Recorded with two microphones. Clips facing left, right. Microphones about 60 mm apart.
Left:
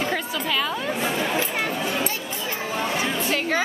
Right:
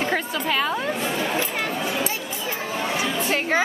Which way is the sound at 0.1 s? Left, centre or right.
Right.